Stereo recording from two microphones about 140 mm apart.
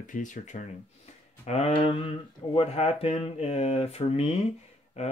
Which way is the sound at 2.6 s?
50° left (ahead or behind).